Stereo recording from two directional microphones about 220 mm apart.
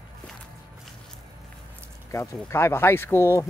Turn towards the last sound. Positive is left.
turn(degrees=10)  # may be behind; listen again after turning